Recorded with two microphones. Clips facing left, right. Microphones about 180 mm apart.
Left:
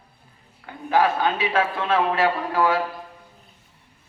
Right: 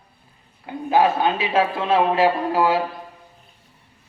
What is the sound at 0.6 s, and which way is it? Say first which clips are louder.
A man's voice: right 2 dB; 25° right (ahead or behind).